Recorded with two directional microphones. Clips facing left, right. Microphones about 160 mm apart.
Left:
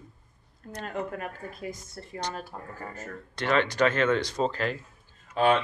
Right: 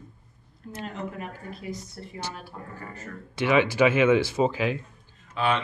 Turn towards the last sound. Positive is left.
turn(degrees=45)  # may be behind; listen again after turning